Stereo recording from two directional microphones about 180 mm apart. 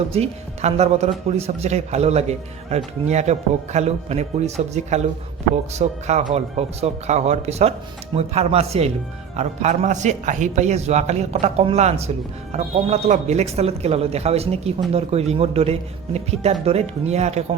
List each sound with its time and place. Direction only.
0.1 s a man's voice: 35° right (ahead or behind)